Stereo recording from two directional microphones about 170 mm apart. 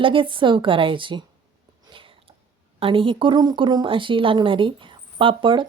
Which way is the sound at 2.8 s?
30° right (ahead or behind).